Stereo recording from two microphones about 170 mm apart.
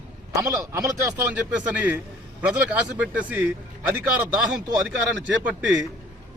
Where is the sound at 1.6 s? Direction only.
10° right (ahead or behind).